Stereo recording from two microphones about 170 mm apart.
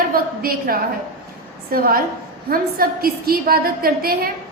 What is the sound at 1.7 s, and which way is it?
A woman's voice, 60° right (ahead or behind).